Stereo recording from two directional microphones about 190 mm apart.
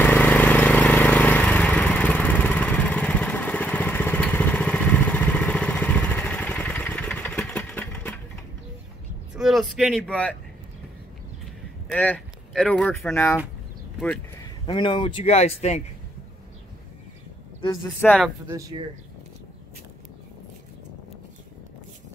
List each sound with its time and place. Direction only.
0.0 s vehicle: 10° left (ahead or behind)
9.4 s a sound: centre (ahead or behind)
11.9 s speech: 5° left (ahead or behind)
14.7 s speech: 25° left (ahead or behind)
17.6 s speech: 25° left (ahead or behind)
18.0 s speech: 5° left (ahead or behind)
18.5 s speech: 20° right (ahead or behind)